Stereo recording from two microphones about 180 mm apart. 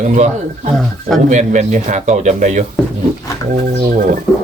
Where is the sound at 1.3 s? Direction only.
40° right (ahead or behind).